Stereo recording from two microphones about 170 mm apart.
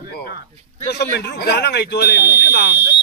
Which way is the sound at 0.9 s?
75° left (ahead or behind).